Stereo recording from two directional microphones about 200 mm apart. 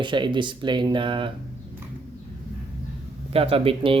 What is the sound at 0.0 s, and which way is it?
Speech, 25° right (ahead or behind).